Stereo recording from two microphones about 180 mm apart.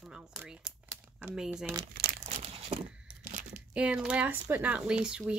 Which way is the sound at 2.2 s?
35° right (ahead or behind).